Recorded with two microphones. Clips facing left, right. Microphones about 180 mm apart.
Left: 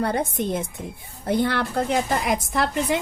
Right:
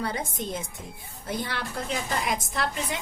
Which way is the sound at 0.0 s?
60° left (ahead or behind).